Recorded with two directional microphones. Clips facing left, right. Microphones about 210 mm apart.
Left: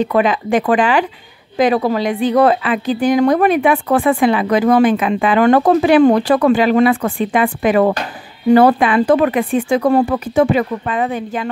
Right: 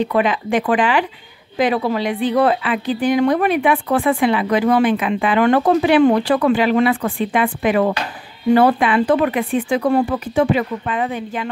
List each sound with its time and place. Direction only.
0.0 s a woman's voice: 45° left (ahead or behind)